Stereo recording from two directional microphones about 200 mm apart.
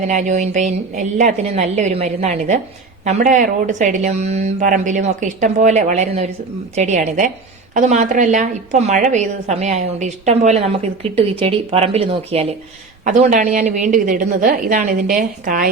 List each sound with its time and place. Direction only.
0.1 s a woman's voice: 35° right (ahead or behind)